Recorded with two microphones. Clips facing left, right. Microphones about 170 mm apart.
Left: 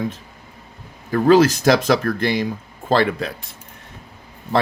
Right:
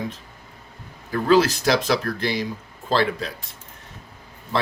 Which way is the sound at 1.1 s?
45° left (ahead or behind).